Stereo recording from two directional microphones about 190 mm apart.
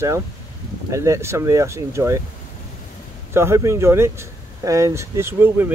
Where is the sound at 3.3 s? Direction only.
15° right (ahead or behind).